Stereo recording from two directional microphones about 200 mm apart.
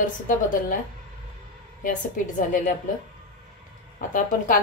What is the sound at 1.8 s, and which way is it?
Speech, 40° left (ahead or behind).